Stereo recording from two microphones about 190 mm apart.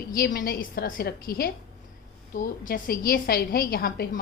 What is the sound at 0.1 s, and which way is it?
A woman's voice, 50° left (ahead or behind).